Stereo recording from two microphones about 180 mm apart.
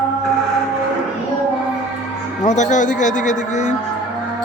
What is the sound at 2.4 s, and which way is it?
Speech, 40° left (ahead or behind).